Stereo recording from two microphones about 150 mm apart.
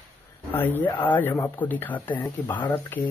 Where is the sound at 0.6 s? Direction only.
10° left (ahead or behind).